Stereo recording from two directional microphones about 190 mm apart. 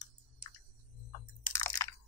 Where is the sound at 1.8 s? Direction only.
15° left (ahead or behind).